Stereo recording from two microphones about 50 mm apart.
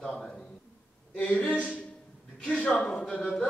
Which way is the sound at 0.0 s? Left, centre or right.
Centre.